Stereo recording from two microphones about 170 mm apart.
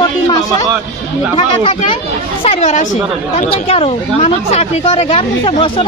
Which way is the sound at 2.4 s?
40° left (ahead or behind).